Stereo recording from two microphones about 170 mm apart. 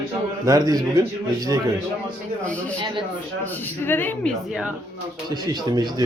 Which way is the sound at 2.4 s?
10° left (ahead or behind).